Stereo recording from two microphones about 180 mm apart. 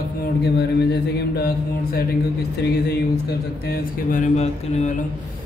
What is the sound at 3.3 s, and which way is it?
Mantra, 60° left (ahead or behind).